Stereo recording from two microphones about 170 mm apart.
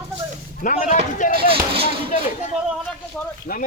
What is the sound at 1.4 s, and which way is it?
Speech, 30° right (ahead or behind).